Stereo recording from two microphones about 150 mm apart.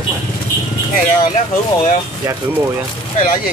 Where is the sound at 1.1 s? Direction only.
55° left (ahead or behind).